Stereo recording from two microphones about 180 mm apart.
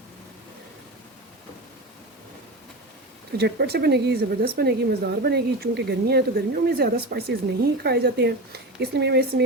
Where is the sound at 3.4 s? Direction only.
60° right (ahead or behind).